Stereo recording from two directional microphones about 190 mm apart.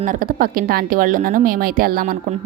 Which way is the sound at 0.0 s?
45° right (ahead or behind).